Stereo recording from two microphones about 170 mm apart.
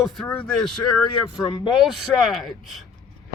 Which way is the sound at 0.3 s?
10° left (ahead or behind).